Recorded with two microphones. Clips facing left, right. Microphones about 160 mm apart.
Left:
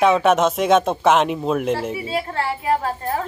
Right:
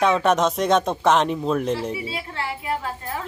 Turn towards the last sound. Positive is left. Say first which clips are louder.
# left 6 dB
turn(degrees=45)  # may be behind; listen again after turning